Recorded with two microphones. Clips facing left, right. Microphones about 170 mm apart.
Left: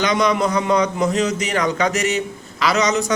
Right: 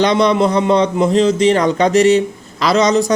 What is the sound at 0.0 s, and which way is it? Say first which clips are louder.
A man's voice: right 5 dB; 30° right (ahead or behind).